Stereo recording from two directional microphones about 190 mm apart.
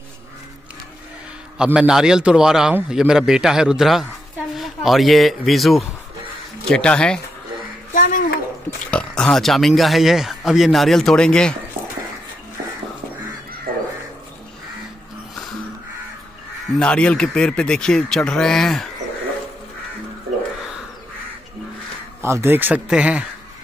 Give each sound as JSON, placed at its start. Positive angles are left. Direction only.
{"t": 1.6, "sound": "speech", "side_deg": -5}
{"t": 7.9, "sound": "a sound", "side_deg": 45}
{"t": 8.6, "sound": "speech", "side_deg": 5}
{"t": 16.7, "sound": "speech", "side_deg": 5}
{"t": 22.2, "sound": "speech", "side_deg": -15}